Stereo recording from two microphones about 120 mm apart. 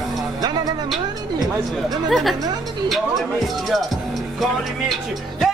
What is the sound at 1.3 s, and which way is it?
Speech, 30° right (ahead or behind).